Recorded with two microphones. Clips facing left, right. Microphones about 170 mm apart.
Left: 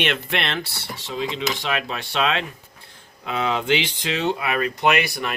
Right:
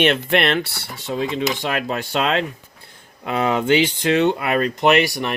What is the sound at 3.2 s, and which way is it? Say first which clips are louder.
Speech: right 4 dB; 50° right (ahead or behind).